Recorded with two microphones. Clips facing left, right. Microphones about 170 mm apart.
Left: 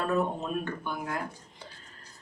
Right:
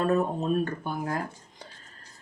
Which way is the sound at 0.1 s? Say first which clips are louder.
Right 4 dB; 35° right (ahead or behind).